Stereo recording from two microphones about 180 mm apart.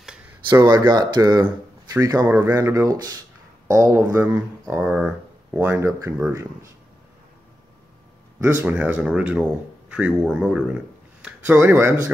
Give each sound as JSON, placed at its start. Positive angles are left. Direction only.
{"t": 0.6, "sound": "speech", "side_deg": -20}
{"t": 1.4, "sound": "a sound", "side_deg": -10}
{"t": 2.2, "sound": "speech", "side_deg": -15}
{"t": 8.4, "sound": "speech", "side_deg": -10}